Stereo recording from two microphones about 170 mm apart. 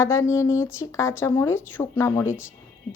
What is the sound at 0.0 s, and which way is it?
A woman's voice, 15° left (ahead or behind).